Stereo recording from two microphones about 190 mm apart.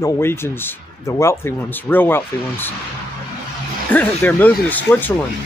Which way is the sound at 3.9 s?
10° left (ahead or behind).